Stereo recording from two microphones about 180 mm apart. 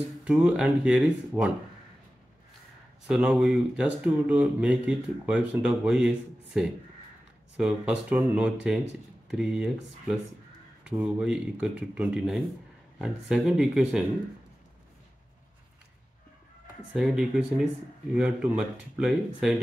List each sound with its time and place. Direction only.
0.2 s speech: 5° right (ahead or behind)
3.1 s speech: 5° right (ahead or behind)
16.9 s speech: 5° right (ahead or behind)